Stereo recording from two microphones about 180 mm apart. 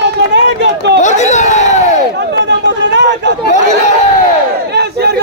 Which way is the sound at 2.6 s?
75° right (ahead or behind).